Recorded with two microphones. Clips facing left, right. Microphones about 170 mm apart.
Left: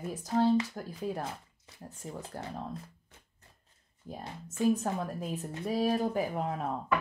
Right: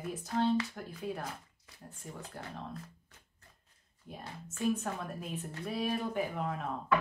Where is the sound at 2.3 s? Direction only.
35° left (ahead or behind).